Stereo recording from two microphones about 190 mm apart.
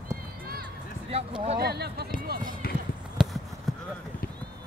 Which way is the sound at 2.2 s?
50° right (ahead or behind).